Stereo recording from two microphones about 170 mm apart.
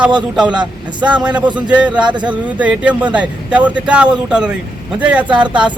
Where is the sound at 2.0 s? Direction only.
25° right (ahead or behind).